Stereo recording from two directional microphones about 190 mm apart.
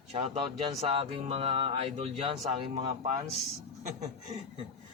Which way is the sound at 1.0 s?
35° right (ahead or behind).